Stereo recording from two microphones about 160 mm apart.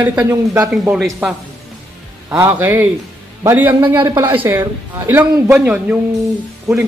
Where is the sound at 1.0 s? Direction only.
5° right (ahead or behind).